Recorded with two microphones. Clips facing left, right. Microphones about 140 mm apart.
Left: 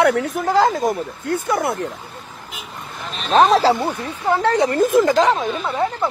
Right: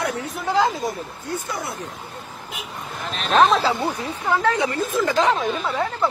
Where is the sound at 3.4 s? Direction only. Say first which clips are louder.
Left 4 dB; 35° left (ahead or behind).